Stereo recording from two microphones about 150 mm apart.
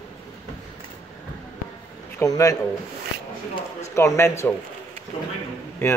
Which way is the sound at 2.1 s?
20° left (ahead or behind).